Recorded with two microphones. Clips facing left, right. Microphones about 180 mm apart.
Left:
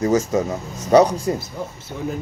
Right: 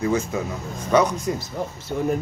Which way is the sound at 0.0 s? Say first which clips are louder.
Left 5 dB; 45° left (ahead or behind).